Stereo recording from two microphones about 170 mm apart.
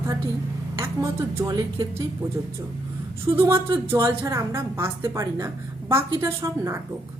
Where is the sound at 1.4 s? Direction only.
20° right (ahead or behind).